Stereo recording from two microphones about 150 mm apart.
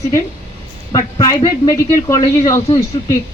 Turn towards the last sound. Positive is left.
turn(degrees=25)  # may be behind; listen again after turning